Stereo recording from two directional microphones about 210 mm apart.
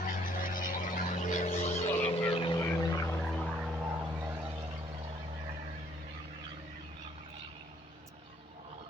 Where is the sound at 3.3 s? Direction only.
Centre (ahead or behind).